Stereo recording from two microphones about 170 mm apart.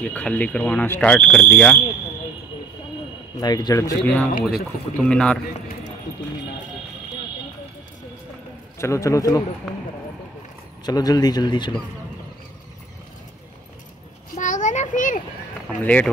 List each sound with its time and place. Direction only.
0.0 s speech: 10° left (ahead or behind)
3.3 s speech: 25° left (ahead or behind)
4.0 s speech: 10° left (ahead or behind)
4.3 s speech: 65° left (ahead or behind)
5.1 s a man's voice: 5° left (ahead or behind)
8.7 s speech: 15° left (ahead or behind)
10.9 s speech: 20° left (ahead or behind)
14.3 s a sound: 45° left (ahead or behind)
15.8 s speech: 10° left (ahead or behind)